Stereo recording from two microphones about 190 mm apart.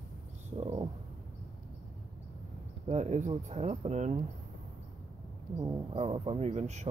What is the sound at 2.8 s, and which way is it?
Speech, 35° right (ahead or behind).